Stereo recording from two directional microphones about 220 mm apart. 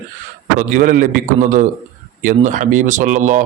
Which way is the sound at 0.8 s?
40° right (ahead or behind).